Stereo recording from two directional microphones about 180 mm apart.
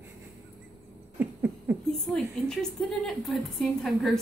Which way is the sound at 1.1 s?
15° right (ahead or behind).